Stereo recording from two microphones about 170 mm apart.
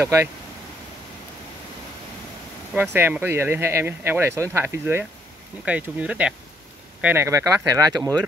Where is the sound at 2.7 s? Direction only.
10° right (ahead or behind).